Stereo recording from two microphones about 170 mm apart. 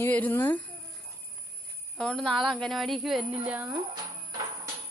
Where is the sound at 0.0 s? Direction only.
10° left (ahead or behind).